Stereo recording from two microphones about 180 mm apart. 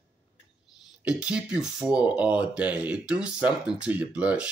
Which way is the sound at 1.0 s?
5° right (ahead or behind).